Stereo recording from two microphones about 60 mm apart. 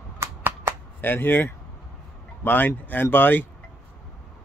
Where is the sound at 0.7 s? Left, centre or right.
Right.